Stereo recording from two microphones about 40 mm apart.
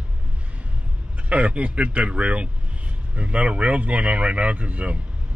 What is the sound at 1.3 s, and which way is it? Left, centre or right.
Speech, right.